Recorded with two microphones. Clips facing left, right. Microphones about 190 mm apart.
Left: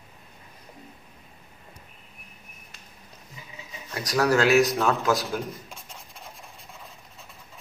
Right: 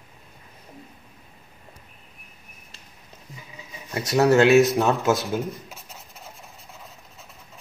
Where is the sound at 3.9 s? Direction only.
25° right (ahead or behind).